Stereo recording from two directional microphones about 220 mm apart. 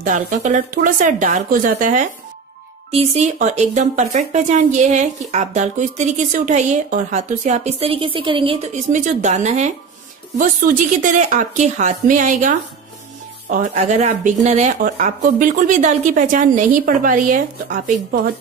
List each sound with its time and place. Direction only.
0.0 s speech: 35° right (ahead or behind)
11.0 s speech: 35° right (ahead or behind)